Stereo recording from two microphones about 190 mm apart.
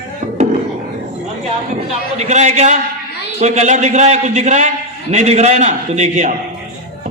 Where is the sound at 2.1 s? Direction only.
35° right (ahead or behind).